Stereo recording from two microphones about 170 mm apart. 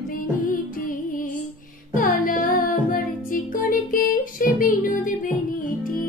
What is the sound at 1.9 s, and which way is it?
Music, 55° left (ahead or behind).